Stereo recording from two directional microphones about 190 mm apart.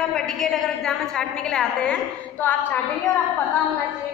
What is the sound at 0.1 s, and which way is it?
A woman's voice, 5° left (ahead or behind).